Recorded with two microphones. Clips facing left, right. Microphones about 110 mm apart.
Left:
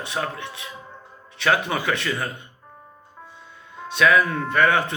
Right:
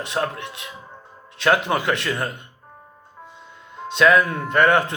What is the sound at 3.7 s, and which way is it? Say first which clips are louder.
A man's voice: right 2 dB; 20° right (ahead or behind).